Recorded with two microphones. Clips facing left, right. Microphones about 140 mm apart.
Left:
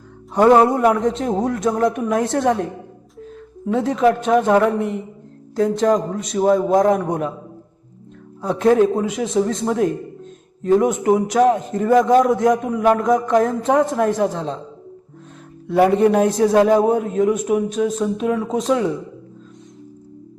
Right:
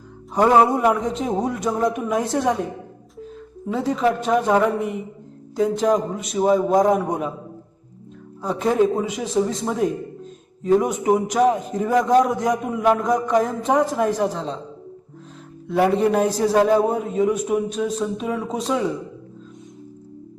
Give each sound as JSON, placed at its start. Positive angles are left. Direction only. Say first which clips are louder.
{"t": 0.3, "sound": "a man's voice", "louder": "left 3 dB", "side_deg": 0}
{"t": 3.7, "sound": "a man's voice", "louder": "left 4 dB", "side_deg": 0}
{"t": 8.4, "sound": "a man's voice", "louder": "left 4 dB", "side_deg": 0}
{"t": 15.6, "sound": "a man's voice", "louder": "left 4 dB", "side_deg": 0}